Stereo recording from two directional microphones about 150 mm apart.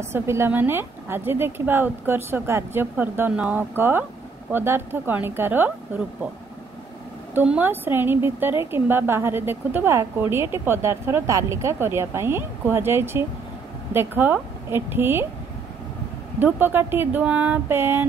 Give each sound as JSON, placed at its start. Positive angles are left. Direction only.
{"t": 0.0, "sound": "a woman's voice", "side_deg": -15}
{"t": 7.3, "sound": "a woman's voice", "side_deg": -10}
{"t": 16.3, "sound": "a woman's voice", "side_deg": -10}